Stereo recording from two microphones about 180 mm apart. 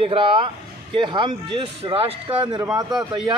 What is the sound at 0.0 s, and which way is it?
Speech, 30° right (ahead or behind).